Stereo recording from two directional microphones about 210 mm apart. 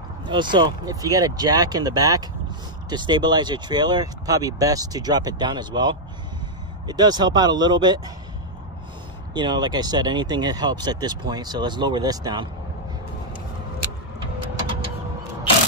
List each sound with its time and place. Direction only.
0.3 s speech: 20° right (ahead or behind)
9.3 s speech: 20° right (ahead or behind)